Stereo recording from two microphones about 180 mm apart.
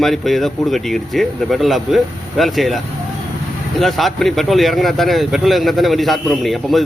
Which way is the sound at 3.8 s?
Centre (ahead or behind).